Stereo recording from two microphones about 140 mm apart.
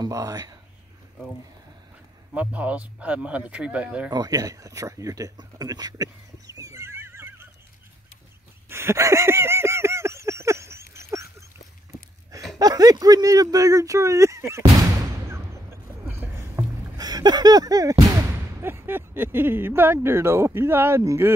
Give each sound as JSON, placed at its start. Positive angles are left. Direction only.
{"t": 0.0, "sound": "speech", "side_deg": -25}
{"t": 2.3, "sound": "speech", "side_deg": -10}
{"t": 4.1, "sound": "speech", "side_deg": -25}
{"t": 6.6, "sound": "neigh", "side_deg": -20}
{"t": 8.6, "sound": "a sound", "side_deg": -20}
{"t": 12.5, "sound": "speech", "side_deg": -25}
{"t": 16.1, "sound": "rowboat", "side_deg": -15}
{"t": 16.9, "sound": "speech", "side_deg": -30}
{"t": 18.6, "sound": "speech", "side_deg": -15}